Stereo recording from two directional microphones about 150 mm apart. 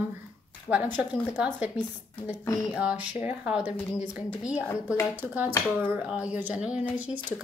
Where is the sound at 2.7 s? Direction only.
10° right (ahead or behind).